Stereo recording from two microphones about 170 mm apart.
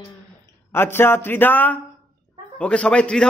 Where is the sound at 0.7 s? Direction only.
15° left (ahead or behind).